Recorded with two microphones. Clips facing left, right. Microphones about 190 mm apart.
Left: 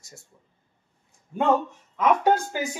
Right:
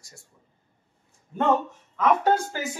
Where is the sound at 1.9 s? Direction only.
15° left (ahead or behind).